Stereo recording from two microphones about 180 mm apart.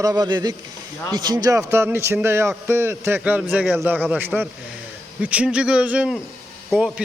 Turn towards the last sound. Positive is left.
turn(degrees=0)  # may be behind; listen again after turning